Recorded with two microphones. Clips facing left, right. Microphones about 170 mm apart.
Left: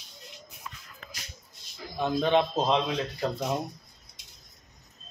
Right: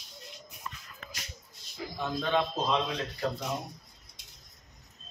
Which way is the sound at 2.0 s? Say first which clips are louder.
Left 5 dB; 20° left (ahead or behind).